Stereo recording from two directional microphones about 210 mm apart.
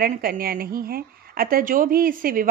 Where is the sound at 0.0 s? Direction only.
45° right (ahead or behind).